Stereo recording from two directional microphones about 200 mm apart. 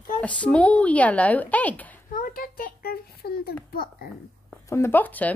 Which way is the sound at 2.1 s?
45° left (ahead or behind).